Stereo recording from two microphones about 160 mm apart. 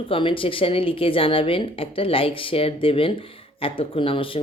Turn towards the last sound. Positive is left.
turn(degrees=35)  # may be behind; listen again after turning